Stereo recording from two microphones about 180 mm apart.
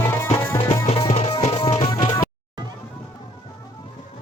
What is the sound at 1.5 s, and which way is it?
Music, 20° left (ahead or behind).